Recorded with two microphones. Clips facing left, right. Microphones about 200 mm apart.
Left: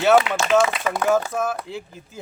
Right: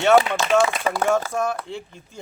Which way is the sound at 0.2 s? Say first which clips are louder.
Even; 35° right (ahead or behind).